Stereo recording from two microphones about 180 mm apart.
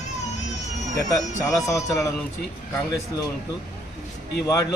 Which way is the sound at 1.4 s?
20° left (ahead or behind).